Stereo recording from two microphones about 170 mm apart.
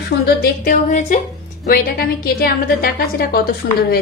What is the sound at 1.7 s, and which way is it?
A woman's voice, 65° left (ahead or behind).